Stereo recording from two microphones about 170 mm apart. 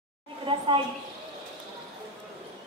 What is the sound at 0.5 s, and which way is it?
Speech, 30° right (ahead or behind).